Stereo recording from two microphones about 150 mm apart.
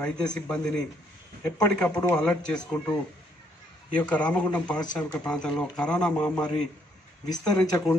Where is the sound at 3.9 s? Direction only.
10° left (ahead or behind).